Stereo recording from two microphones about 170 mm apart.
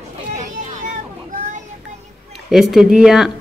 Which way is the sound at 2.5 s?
Centre (ahead or behind).